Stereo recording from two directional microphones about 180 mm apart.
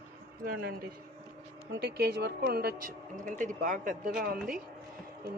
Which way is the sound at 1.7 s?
70° right (ahead or behind).